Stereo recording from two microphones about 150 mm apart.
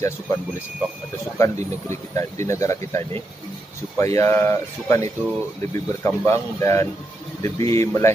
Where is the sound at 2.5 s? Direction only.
20° left (ahead or behind).